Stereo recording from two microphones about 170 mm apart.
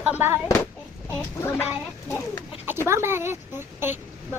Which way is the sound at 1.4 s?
15° left (ahead or behind).